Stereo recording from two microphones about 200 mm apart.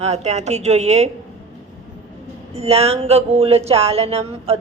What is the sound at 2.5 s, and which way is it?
Speech, 30° right (ahead or behind).